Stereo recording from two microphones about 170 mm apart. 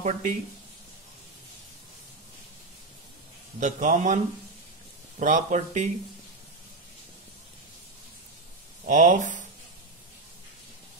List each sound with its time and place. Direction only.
0.0 s a man's voice: 45° right (ahead or behind)
3.5 s a man's voice: 45° right (ahead or behind)
5.2 s a man's voice: 45° right (ahead or behind)
8.8 s a man's voice: 45° right (ahead or behind)